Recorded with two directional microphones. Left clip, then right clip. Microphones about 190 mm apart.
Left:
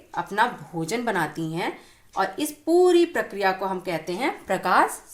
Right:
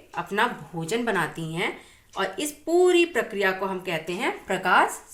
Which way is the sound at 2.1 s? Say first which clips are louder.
Left 3 dB; 20° left (ahead or behind).